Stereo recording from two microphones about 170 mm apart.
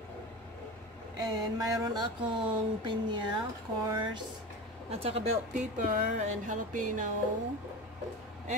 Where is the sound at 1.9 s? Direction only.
25° right (ahead or behind).